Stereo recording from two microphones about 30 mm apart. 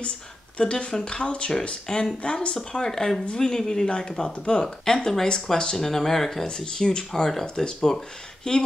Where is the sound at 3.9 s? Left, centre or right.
Left.